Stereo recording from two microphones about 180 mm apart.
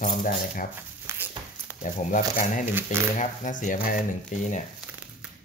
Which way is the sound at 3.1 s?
45° left (ahead or behind).